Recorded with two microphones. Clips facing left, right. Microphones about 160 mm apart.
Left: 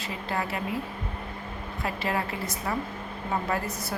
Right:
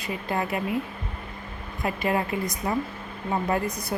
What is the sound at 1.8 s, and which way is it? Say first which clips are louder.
A woman's voice: right 4 dB; 20° right (ahead or behind).